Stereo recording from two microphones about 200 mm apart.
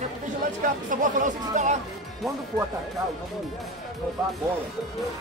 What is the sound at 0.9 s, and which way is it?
Speech, 40° right (ahead or behind).